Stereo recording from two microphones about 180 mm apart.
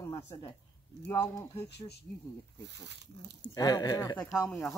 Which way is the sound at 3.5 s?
20° left (ahead or behind).